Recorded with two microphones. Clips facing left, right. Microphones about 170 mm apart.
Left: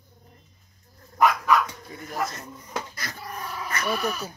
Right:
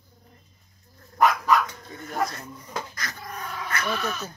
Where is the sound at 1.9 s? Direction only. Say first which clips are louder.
Even; 10° left (ahead or behind).